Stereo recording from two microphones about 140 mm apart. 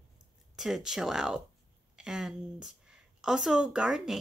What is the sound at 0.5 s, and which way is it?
A woman's voice, centre (ahead or behind).